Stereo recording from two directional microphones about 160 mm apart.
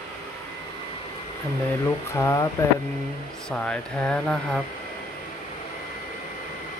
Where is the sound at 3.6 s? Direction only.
5° left (ahead or behind).